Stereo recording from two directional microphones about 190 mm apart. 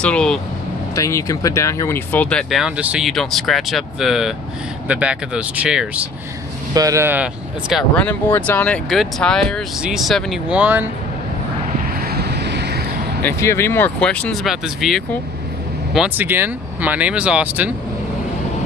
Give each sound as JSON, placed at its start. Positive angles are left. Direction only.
{"t": 0.0, "sound": "speech", "side_deg": 5}
{"t": 0.9, "sound": "speech", "side_deg": 15}
{"t": 6.7, "sound": "speech", "side_deg": -15}
{"t": 7.7, "sound": "speech", "side_deg": 5}
{"t": 12.0, "sound": "vehicle", "side_deg": -55}
{"t": 13.2, "sound": "speech", "side_deg": 15}